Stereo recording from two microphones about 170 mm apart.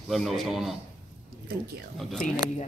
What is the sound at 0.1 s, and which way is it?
Speech, centre (ahead or behind).